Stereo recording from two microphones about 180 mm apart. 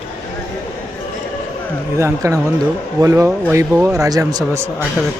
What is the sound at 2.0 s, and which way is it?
A man's voice, 15° right (ahead or behind).